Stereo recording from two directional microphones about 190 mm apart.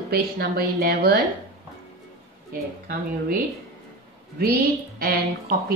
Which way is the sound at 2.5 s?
50° right (ahead or behind).